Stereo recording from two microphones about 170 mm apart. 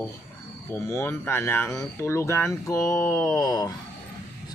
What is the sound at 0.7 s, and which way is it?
Speech, 15° left (ahead or behind).